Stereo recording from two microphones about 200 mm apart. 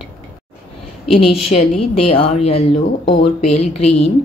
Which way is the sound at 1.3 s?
30° left (ahead or behind).